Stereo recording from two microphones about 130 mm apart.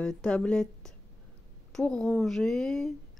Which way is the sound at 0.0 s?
5° left (ahead or behind).